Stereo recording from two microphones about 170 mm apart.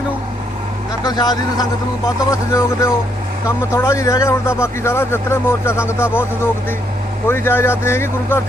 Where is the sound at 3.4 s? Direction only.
15° left (ahead or behind).